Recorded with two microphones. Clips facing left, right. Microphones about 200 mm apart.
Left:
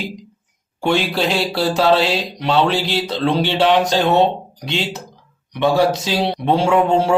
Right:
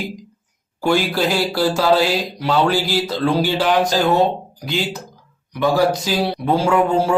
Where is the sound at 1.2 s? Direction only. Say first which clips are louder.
Right 1 dB; 25° left (ahead or behind).